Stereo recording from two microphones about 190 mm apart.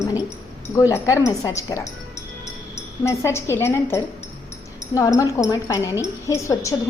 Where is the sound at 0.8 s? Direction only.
15° left (ahead or behind).